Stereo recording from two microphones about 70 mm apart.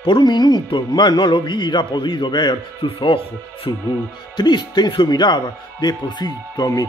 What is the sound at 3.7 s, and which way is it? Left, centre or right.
Speech, left.